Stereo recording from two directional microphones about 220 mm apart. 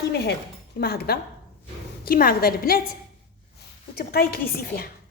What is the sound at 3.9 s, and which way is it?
Speech, 45° left (ahead or behind).